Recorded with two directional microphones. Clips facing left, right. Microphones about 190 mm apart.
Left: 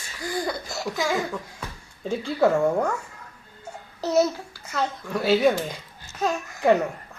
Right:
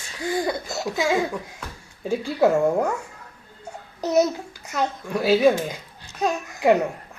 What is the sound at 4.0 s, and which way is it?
A child's voice, 15° right (ahead or behind).